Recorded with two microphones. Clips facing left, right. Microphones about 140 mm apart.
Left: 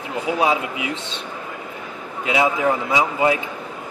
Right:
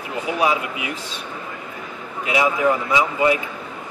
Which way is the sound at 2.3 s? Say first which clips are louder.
Even; 25° left (ahead or behind).